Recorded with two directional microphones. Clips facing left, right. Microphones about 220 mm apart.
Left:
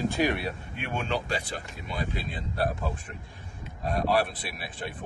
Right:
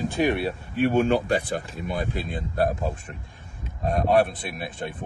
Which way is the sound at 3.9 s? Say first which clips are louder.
Right 5 dB; 45° right (ahead or behind).